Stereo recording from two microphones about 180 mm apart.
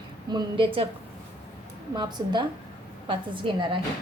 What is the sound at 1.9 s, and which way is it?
A woman's voice, 25° right (ahead or behind).